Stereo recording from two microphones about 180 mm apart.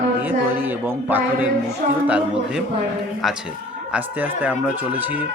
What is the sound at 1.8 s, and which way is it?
Speech, 50° right (ahead or behind).